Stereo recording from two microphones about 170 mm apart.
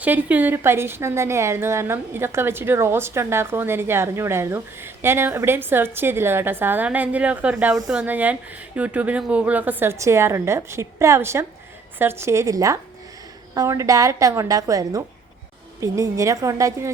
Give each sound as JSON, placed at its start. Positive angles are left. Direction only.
{"t": 0.0, "sound": "a woman's voice", "side_deg": -10}